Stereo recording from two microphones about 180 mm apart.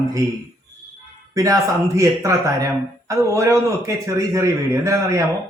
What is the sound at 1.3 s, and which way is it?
Speech, 20° right (ahead or behind).